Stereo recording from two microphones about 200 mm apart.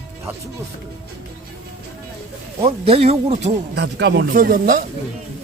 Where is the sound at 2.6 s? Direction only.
30° right (ahead or behind).